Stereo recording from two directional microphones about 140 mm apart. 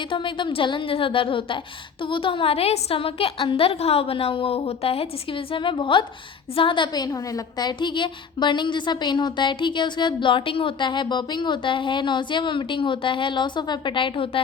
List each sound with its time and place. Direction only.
0.1 s a woman's voice: 35° left (ahead or behind)